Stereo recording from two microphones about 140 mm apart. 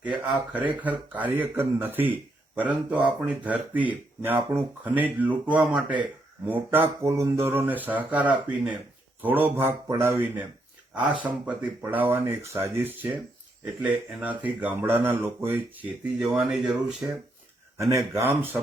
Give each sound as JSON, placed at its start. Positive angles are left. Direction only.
{"t": 0.3, "sound": "speech", "side_deg": -10}
{"t": 17.7, "sound": "speech", "side_deg": -20}